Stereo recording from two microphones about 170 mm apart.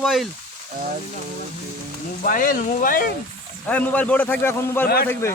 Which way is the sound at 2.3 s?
55° left (ahead or behind).